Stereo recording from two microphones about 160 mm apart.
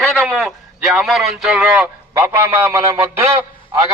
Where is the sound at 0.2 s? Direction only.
Centre (ahead or behind).